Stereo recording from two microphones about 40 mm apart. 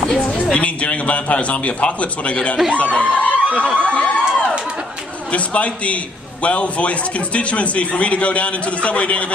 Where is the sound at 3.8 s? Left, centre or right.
Left.